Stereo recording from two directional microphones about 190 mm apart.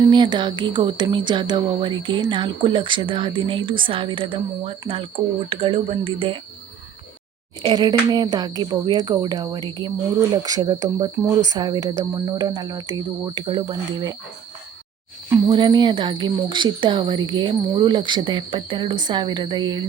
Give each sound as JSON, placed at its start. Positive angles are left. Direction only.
{"t": 0.0, "sound": "speech", "side_deg": -25}
{"t": 7.6, "sound": "speech", "side_deg": -25}
{"t": 15.3, "sound": "speech", "side_deg": -25}